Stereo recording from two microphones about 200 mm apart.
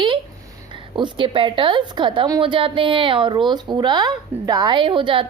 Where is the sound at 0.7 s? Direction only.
25° right (ahead or behind).